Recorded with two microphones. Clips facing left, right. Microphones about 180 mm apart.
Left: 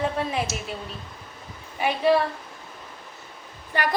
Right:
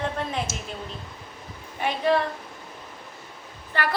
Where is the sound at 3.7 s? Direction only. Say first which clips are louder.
Left 2 dB; 15° left (ahead or behind).